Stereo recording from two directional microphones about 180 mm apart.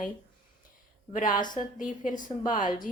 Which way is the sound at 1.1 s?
45° left (ahead or behind).